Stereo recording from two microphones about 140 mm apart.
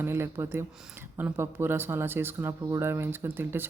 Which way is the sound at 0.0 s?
15° right (ahead or behind).